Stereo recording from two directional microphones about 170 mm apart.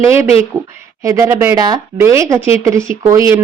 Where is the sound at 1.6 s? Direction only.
25° right (ahead or behind).